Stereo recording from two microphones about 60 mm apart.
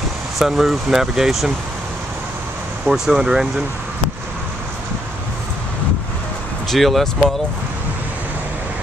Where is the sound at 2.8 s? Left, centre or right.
Centre.